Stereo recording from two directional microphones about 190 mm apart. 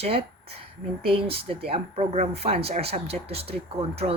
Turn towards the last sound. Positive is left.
turn(degrees=-30)  # may be behind; listen again after turning